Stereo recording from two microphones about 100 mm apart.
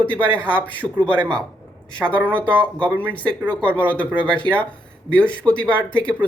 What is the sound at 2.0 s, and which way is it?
Speech, 20° right (ahead or behind).